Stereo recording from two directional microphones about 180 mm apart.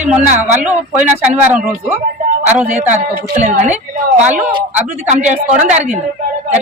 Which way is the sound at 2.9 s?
40° right (ahead or behind).